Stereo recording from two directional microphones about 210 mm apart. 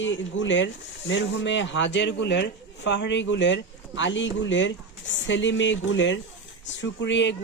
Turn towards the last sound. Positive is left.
turn(degrees=60)  # may be behind; listen again after turning